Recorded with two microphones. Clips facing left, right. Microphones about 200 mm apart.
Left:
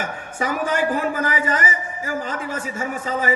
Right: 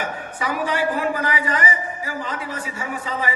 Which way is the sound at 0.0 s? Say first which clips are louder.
Left 1 dB; 45° left (ahead or behind).